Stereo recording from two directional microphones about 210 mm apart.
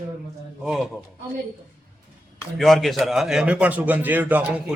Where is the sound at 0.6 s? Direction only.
Centre (ahead or behind).